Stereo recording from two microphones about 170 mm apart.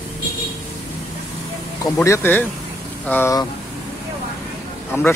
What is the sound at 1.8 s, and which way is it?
Speech, 15° left (ahead or behind).